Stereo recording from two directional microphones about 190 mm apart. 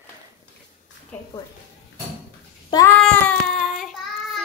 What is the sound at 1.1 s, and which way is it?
Speech, 10° left (ahead or behind).